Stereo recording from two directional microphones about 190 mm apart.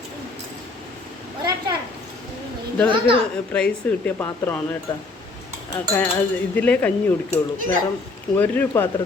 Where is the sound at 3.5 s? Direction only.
5° left (ahead or behind).